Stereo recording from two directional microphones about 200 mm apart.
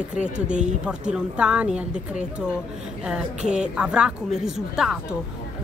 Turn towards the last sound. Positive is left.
turn(degrees=0)  # may be behind; listen again after turning